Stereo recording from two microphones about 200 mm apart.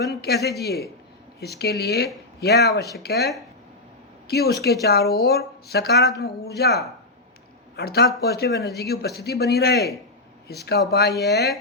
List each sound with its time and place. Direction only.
0.0 s a man's voice: 55° left (ahead or behind)